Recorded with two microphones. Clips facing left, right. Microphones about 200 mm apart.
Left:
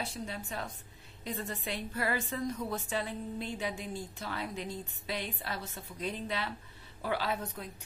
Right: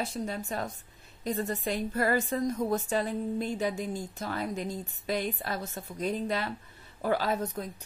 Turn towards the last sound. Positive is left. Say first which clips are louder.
# right 5 dB
turn(degrees=-40)  # may be behind; listen again after turning